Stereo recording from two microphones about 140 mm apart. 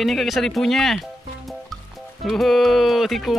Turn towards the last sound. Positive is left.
turn(degrees=0)  # may be behind; listen again after turning